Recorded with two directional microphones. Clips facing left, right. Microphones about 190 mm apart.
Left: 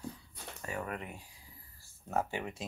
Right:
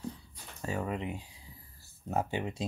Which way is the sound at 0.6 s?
25° right (ahead or behind).